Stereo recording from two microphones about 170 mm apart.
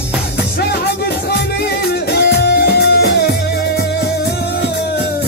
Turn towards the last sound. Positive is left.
turn(degrees=70)  # may be behind; listen again after turning